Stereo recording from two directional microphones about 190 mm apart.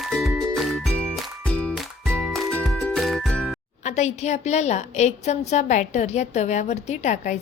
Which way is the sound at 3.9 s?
35° left (ahead or behind).